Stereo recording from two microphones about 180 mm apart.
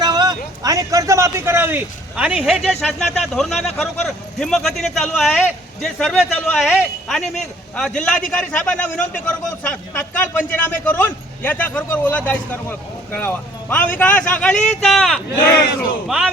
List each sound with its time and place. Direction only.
0.0 s a man's voice: 20° right (ahead or behind); by 16.2 s 5° right (ahead or behind)